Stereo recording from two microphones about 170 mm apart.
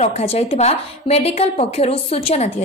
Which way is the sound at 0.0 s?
40° left (ahead or behind).